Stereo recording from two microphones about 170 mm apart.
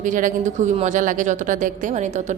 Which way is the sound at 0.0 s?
50° right (ahead or behind).